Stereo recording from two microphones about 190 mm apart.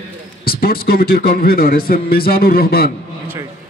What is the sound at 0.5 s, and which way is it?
A man's voice, 50° left (ahead or behind).